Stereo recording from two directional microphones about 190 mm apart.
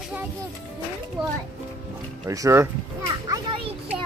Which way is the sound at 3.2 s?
20° right (ahead or behind).